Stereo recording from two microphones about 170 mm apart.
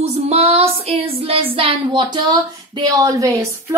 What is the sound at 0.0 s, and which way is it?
Child singing, 35° right (ahead or behind).